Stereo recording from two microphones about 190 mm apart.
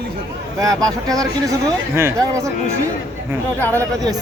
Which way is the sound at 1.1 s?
20° right (ahead or behind).